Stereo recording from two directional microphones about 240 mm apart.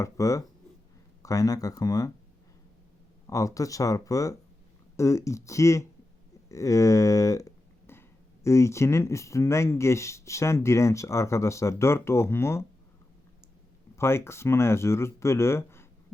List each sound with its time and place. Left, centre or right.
0.0 s speech: centre
3.2 s speech: centre
6.5 s a sound: centre
8.4 s speech: centre
13.9 s speech: centre